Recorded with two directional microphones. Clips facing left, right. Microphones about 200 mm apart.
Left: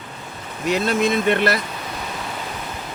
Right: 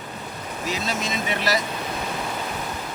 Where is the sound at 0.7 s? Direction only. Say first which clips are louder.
Left 9 dB; 60° left (ahead or behind).